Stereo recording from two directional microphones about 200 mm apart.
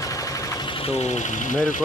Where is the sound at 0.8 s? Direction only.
35° left (ahead or behind).